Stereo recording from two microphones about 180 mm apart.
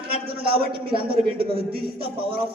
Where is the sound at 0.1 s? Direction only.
60° right (ahead or behind).